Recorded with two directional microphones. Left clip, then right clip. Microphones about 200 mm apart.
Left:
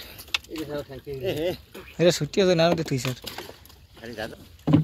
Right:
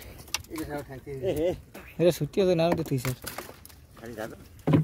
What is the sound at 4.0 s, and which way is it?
Rowboat, 25° right (ahead or behind).